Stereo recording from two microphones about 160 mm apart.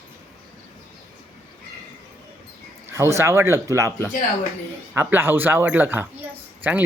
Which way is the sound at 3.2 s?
15° right (ahead or behind).